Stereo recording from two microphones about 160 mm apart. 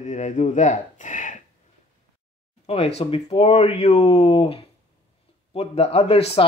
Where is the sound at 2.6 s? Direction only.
40° left (ahead or behind).